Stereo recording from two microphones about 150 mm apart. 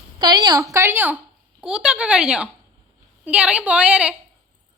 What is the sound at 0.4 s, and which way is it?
A woman's voice, 25° right (ahead or behind).